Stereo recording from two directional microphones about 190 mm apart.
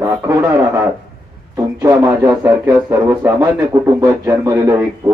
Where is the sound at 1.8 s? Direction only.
15° right (ahead or behind).